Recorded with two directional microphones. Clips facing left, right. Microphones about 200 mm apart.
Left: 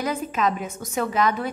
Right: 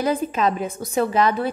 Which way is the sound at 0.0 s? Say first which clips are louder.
Right 4 dB; 30° right (ahead or behind).